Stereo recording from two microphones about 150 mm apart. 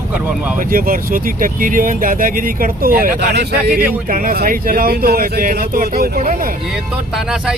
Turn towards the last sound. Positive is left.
turn(degrees=-5)  # may be behind; listen again after turning